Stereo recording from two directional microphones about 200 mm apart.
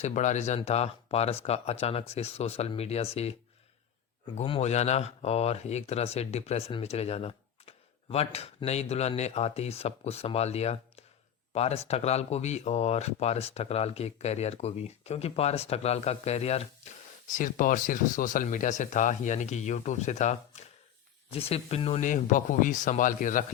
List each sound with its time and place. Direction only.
0.0 s speech: 35° left (ahead or behind)
4.4 s speech: 30° left (ahead or behind)
17.3 s speech: 40° left (ahead or behind)